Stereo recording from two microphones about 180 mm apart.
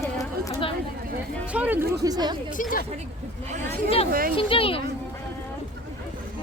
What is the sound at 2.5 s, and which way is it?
Speech, 45° left (ahead or behind).